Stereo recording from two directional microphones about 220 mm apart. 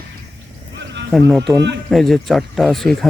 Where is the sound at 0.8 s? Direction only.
55° right (ahead or behind).